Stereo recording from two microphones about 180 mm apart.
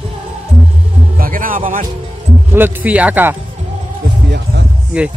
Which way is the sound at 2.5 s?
10° right (ahead or behind).